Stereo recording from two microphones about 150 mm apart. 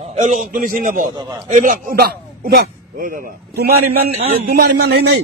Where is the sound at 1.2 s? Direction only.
25° right (ahead or behind).